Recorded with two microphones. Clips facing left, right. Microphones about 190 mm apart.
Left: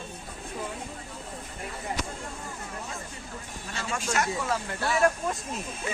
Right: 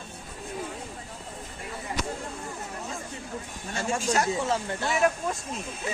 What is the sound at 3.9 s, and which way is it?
Speech, 30° right (ahead or behind).